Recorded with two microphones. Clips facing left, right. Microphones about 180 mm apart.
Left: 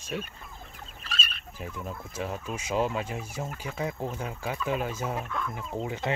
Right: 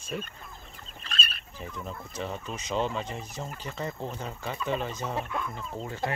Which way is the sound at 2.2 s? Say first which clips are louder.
Left 2 dB; 5° left (ahead or behind).